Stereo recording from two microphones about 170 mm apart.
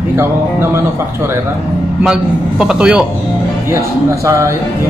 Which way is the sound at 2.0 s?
5° right (ahead or behind).